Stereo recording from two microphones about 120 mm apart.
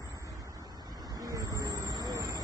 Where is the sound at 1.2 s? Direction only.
30° right (ahead or behind).